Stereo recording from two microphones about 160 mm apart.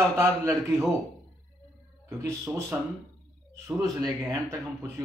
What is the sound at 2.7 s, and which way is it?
Speech, 10° right (ahead or behind).